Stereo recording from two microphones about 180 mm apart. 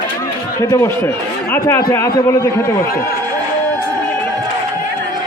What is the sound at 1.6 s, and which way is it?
Speech, 15° left (ahead or behind).